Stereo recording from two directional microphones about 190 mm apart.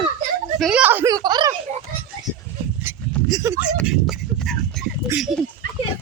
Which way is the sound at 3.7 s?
Centre (ahead or behind).